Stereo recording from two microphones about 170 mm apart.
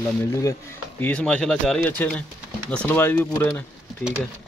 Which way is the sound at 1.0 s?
5° left (ahead or behind).